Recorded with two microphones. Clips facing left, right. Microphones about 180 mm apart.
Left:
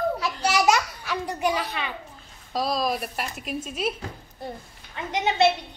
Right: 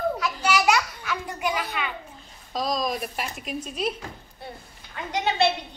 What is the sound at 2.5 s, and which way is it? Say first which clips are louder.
Speech: left 1 dB; 5° left (ahead or behind).